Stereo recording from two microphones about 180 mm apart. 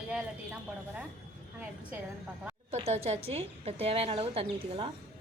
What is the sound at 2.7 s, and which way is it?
A woman's voice, 35° right (ahead or behind).